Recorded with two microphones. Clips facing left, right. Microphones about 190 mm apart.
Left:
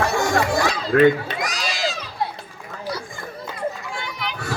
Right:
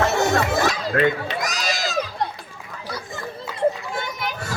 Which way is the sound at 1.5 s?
45° right (ahead or behind).